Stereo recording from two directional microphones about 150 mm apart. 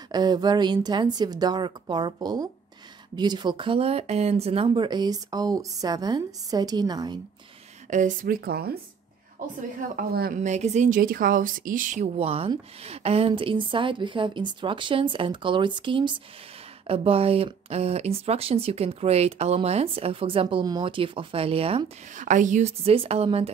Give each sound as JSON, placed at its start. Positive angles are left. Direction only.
{"t": 0.1, "sound": "speech", "side_deg": -25}
{"t": 7.9, "sound": "speech", "side_deg": -60}
{"t": 9.6, "sound": "speech", "side_deg": -70}
{"t": 10.4, "sound": "a woman's voice", "side_deg": -50}
{"t": 11.0, "sound": "speech", "side_deg": -70}
{"t": 22.1, "sound": "a woman's voice", "side_deg": -60}